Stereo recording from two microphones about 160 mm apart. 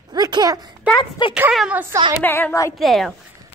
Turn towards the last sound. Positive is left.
turn(degrees=0)  # may be behind; listen again after turning